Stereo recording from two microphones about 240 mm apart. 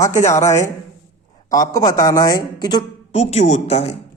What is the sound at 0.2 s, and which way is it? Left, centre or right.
A woman's voice, centre.